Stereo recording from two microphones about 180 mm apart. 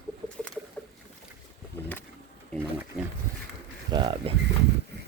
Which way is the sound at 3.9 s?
30° right (ahead or behind).